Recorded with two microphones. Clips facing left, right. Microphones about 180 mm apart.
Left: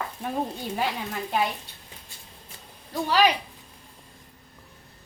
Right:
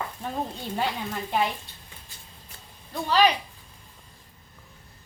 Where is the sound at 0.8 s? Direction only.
5° left (ahead or behind).